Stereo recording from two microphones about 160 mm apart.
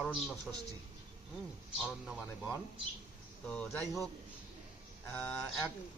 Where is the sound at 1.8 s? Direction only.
5° right (ahead or behind).